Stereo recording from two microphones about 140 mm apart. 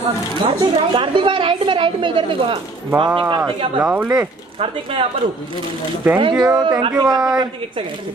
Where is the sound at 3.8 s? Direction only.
10° right (ahead or behind).